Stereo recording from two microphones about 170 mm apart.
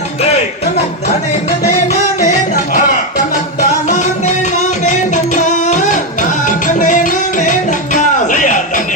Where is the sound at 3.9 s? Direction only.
45° left (ahead or behind).